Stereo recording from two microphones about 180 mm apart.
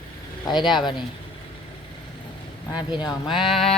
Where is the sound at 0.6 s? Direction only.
Centre (ahead or behind).